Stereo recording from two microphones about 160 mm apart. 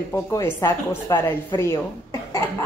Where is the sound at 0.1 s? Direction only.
15° left (ahead or behind).